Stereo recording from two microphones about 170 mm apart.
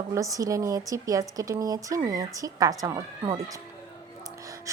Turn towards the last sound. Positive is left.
turn(degrees=-20)  # may be behind; listen again after turning